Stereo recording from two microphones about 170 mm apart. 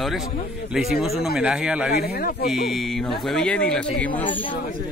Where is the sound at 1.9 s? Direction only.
60° left (ahead or behind).